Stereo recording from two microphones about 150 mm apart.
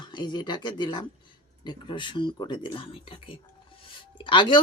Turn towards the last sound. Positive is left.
turn(degrees=30)  # may be behind; listen again after turning